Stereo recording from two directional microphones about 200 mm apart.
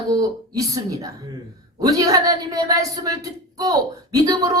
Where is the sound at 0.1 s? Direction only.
20° right (ahead or behind).